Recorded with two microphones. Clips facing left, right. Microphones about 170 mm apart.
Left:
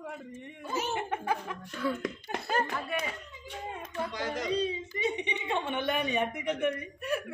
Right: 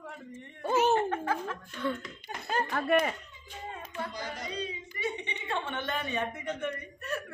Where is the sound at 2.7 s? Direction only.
60° right (ahead or behind).